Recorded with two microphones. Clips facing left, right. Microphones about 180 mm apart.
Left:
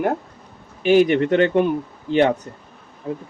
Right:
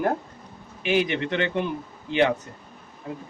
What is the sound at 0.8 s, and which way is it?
Speech, 40° left (ahead or behind).